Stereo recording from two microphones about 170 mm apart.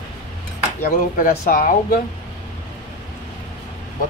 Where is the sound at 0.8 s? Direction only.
60° left (ahead or behind).